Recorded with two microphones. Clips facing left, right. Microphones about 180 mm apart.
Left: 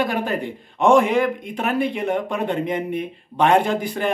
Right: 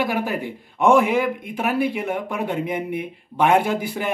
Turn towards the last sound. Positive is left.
turn(degrees=-10)  # may be behind; listen again after turning